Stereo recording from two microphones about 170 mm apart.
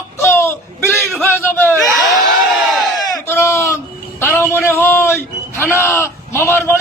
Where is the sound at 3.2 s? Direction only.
15° left (ahead or behind).